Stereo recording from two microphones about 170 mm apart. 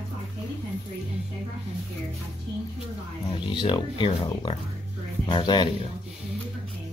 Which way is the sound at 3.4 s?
30° left (ahead or behind).